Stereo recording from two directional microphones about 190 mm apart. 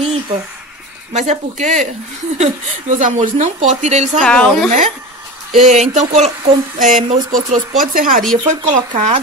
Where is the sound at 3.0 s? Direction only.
40° right (ahead or behind).